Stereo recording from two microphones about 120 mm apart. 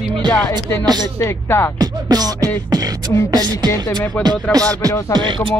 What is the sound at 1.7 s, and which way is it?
Music, 35° right (ahead or behind).